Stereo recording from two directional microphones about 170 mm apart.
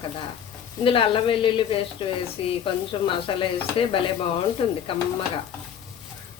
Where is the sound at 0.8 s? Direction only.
30° left (ahead or behind).